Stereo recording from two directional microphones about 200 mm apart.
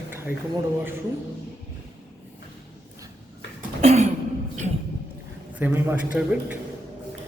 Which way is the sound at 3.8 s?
30° right (ahead or behind).